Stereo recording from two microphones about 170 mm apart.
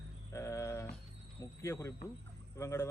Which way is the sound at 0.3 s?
20° left (ahead or behind).